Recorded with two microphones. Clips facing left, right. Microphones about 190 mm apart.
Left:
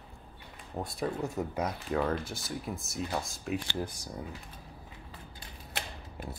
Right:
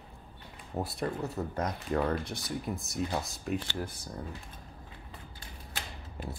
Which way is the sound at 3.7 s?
15° left (ahead or behind).